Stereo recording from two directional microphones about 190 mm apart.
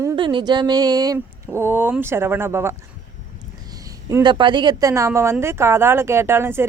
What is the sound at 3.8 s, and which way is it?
A woman's voice, 15° right (ahead or behind).